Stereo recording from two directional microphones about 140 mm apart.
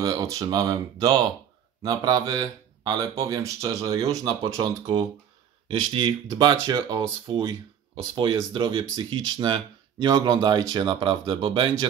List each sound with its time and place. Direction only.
0.0 s speech: 25° right (ahead or behind)